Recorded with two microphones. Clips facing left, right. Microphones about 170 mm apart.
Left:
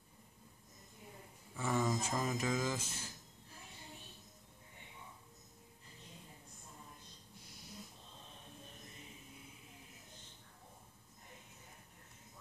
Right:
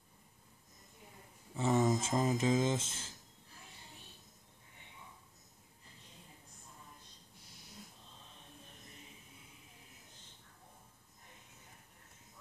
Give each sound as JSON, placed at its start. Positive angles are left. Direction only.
{"t": 1.5, "sound": "speech", "side_deg": -25}